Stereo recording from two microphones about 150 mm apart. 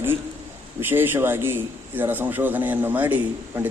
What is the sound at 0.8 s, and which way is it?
A man's voice, 15° right (ahead or behind).